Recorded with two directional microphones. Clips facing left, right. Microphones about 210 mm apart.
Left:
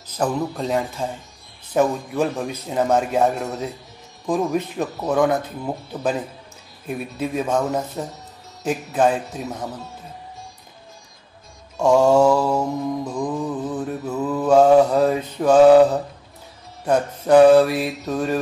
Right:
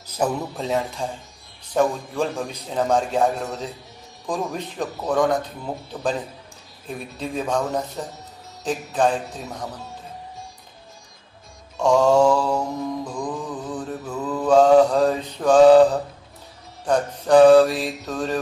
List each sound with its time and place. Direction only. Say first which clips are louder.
0.0 s a man's voice: left 1 dB; 5° right (ahead or behind)
11.7 s mantra: left 2 dB; 5° left (ahead or behind)
13.0 s music: left 4 dB; 20° left (ahead or behind)
14.1 s mantra: left 1 dB; 10° left (ahead or behind)
17.7 s a man's voice: left 3 dB; 5° left (ahead or behind)